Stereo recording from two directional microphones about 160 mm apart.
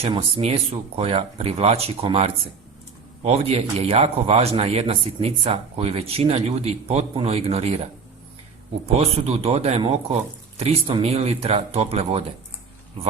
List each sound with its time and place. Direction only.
0.0 s a man's voice: 35° right (ahead or behind)
8.9 s a man's voice: 40° right (ahead or behind)